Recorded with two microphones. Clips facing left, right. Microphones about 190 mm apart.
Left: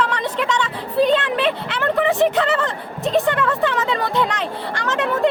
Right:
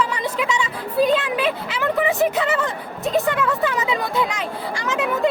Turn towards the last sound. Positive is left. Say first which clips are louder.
# left 1 dB
turn(degrees=-5)  # may be behind; listen again after turning